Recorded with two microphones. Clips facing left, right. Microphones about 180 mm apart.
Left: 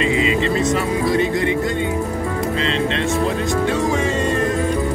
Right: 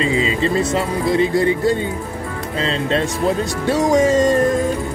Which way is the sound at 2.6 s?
40° right (ahead or behind).